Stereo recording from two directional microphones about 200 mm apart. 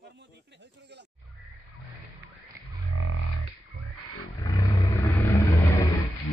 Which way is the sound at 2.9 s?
90° right.